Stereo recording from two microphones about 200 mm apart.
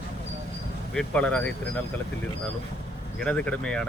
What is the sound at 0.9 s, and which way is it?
Speech, 5° left (ahead or behind).